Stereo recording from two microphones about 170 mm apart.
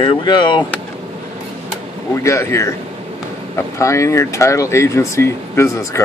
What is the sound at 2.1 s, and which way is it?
Speech, 15° left (ahead or behind).